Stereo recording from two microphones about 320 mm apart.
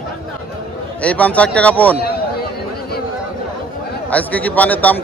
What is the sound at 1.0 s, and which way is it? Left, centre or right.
Speech, centre.